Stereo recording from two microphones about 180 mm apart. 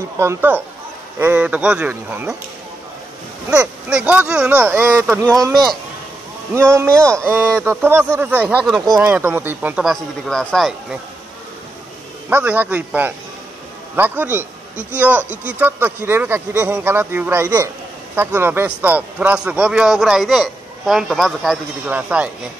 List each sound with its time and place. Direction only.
0.2 s a man's voice: 15° right (ahead or behind)
3.9 s a man's voice: 10° right (ahead or behind)
6.5 s a man's voice: 15° right (ahead or behind)
8.9 s a man's voice: 15° right (ahead or behind)
12.3 s a man's voice: 10° right (ahead or behind)